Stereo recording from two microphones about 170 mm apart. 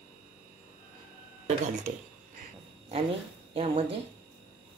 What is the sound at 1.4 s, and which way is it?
Speech, 45° right (ahead or behind).